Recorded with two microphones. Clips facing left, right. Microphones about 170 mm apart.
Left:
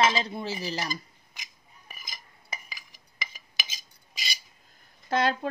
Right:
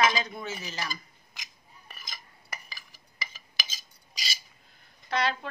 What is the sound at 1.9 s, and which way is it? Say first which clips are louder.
Dishes: even; 10° left (ahead or behind).